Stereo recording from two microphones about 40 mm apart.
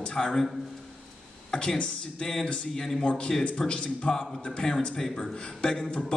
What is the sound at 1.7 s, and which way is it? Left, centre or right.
A man's voice, centre.